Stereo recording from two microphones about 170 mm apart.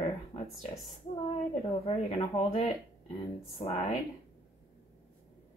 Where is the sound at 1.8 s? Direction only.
35° left (ahead or behind).